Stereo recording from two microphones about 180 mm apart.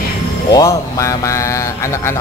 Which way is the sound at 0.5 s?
20° left (ahead or behind).